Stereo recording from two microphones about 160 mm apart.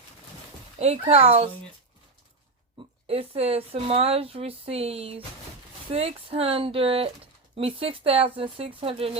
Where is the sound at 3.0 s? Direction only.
40° right (ahead or behind).